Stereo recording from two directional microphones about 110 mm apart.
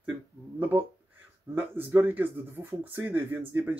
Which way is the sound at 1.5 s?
20° right (ahead or behind).